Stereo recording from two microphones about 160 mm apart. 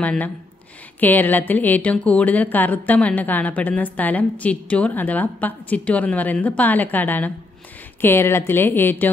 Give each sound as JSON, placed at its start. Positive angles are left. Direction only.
{"t": 0.0, "sound": "speech", "side_deg": 10}